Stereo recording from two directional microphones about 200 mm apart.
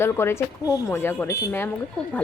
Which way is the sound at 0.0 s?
10° left (ahead or behind).